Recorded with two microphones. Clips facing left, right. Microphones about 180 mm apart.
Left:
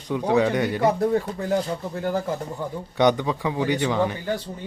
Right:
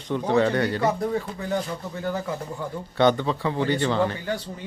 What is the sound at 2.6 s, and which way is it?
Speech, 15° left (ahead or behind).